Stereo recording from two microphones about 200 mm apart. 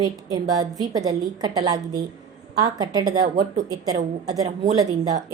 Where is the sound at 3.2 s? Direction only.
40° right (ahead or behind).